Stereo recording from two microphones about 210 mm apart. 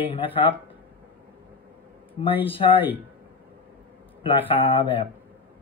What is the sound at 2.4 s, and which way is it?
Speech, 25° left (ahead or behind).